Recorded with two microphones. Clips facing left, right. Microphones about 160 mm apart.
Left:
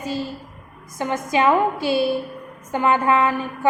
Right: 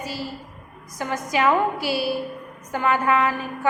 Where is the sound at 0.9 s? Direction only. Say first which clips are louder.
Left 3 dB; 25° left (ahead or behind).